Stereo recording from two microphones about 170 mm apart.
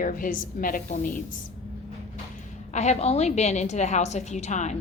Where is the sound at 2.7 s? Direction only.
40° left (ahead or behind).